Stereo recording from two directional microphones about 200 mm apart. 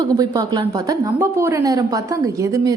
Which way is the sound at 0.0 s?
20° right (ahead or behind).